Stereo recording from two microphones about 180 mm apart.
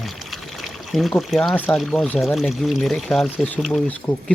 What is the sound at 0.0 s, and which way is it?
Speech, centre (ahead or behind).